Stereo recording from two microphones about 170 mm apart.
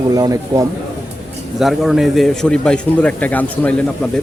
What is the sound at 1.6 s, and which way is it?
A man's voice, centre (ahead or behind).